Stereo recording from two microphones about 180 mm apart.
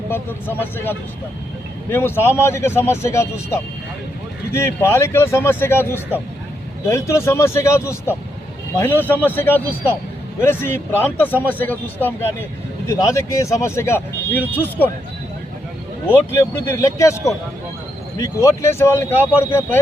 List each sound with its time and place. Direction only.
0.1 s speech: 10° left (ahead or behind)
16.0 s speech: 15° left (ahead or behind)